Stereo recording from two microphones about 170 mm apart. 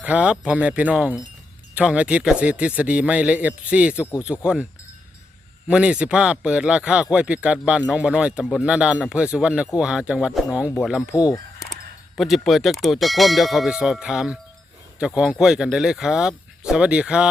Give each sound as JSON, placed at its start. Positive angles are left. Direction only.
{"t": 0.0, "sound": "speech", "side_deg": -5}
{"t": 5.6, "sound": "speech", "side_deg": -5}
{"t": 11.1, "sound": "speech", "side_deg": 20}
{"t": 12.1, "sound": "speech", "side_deg": 0}